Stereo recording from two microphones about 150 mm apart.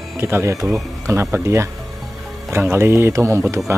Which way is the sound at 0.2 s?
15° right (ahead or behind).